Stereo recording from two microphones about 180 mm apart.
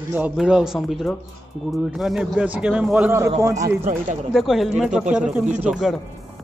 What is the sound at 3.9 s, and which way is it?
Speech, 45° right (ahead or behind).